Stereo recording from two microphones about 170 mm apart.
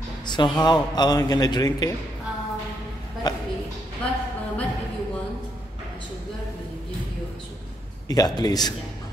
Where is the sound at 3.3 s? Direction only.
25° left (ahead or behind).